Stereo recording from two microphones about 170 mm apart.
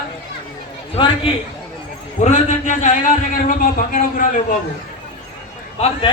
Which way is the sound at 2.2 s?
45° left (ahead or behind).